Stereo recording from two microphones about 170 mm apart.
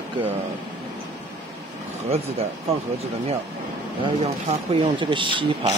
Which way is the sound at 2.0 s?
35° right (ahead or behind).